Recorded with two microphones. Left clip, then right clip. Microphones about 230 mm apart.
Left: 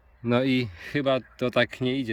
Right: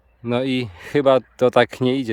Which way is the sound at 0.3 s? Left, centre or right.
Centre.